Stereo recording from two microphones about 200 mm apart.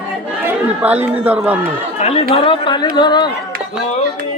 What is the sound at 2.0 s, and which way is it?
Speech, 30° left (ahead or behind).